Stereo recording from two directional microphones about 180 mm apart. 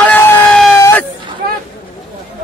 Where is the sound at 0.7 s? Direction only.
15° left (ahead or behind).